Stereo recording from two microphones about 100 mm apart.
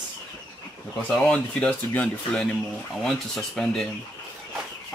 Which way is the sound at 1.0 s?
10° left (ahead or behind).